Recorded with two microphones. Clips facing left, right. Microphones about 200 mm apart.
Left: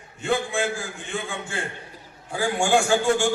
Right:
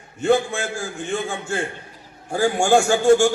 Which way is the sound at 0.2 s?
45° right (ahead or behind).